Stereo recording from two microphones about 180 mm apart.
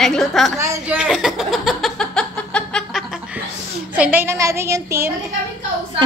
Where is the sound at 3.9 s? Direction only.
10° right (ahead or behind).